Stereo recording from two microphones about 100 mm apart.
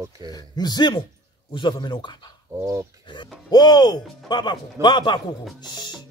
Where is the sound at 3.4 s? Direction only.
45° left (ahead or behind).